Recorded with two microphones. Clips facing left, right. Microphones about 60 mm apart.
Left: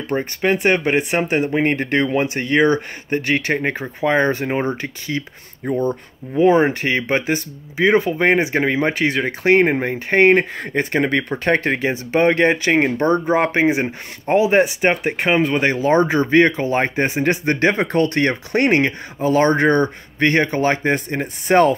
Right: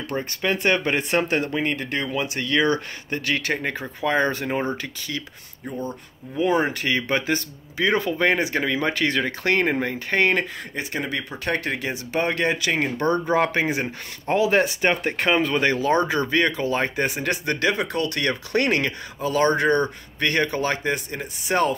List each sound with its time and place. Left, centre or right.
0.1 s speech: left
1.5 s speech: left
5.7 s speech: left
10.6 s speech: left